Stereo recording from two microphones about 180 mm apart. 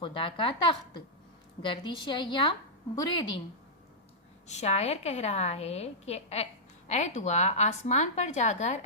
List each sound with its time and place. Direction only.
0.0 s a woman's voice: 30° left (ahead or behind)
1.6 s a woman's voice: 25° left (ahead or behind)
4.4 s a woman's voice: 35° left (ahead or behind)